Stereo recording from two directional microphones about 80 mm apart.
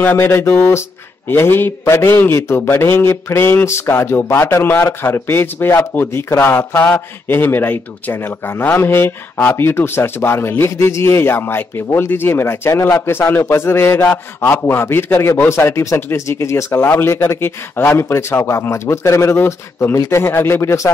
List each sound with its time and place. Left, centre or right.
0.0 s speech: left
16.7 s speech: left